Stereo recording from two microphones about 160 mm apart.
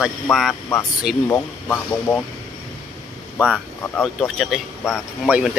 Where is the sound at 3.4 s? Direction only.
Centre (ahead or behind).